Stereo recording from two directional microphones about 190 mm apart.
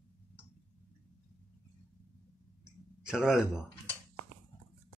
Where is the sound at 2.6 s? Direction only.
5° right (ahead or behind).